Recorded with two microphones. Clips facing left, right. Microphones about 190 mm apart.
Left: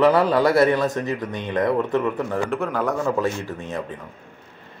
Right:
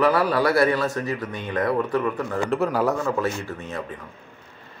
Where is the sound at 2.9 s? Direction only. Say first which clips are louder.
Left 2 dB; 10° left (ahead or behind).